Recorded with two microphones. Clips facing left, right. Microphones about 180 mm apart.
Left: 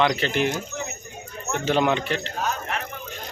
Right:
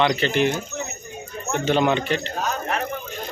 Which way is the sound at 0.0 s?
Centre (ahead or behind).